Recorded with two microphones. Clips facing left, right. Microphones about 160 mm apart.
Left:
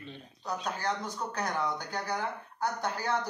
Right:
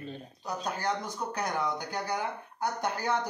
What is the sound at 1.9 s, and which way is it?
A man's voice, 15° right (ahead or behind).